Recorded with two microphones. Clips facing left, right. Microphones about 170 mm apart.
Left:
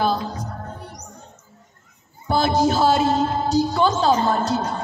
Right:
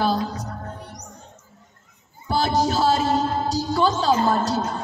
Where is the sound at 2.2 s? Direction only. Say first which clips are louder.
Left 3 dB; 35° right (ahead or behind).